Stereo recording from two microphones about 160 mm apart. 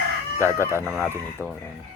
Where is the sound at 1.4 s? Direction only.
10° right (ahead or behind).